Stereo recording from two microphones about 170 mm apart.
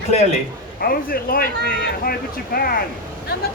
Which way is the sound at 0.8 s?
60° left (ahead or behind).